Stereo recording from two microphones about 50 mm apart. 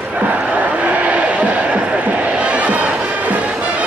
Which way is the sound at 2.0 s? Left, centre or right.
Right.